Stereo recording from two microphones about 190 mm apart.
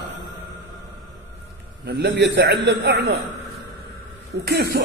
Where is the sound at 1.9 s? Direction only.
60° right (ahead or behind).